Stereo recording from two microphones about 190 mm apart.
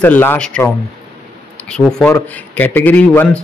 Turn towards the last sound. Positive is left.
turn(degrees=10)  # may be behind; listen again after turning